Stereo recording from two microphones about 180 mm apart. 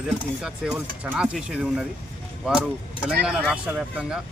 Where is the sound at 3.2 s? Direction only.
5° right (ahead or behind).